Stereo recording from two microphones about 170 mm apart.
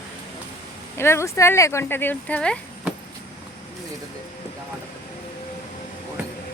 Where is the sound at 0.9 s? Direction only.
15° left (ahead or behind).